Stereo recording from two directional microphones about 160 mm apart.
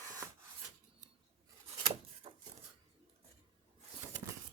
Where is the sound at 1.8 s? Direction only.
40° right (ahead or behind).